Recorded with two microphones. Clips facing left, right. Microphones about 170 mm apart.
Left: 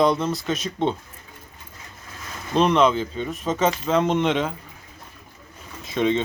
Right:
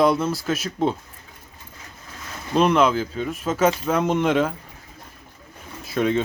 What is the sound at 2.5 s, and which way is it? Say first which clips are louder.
Speech: even; 5° right (ahead or behind).